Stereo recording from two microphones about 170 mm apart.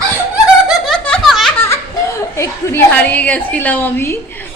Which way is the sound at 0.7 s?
5° left (ahead or behind).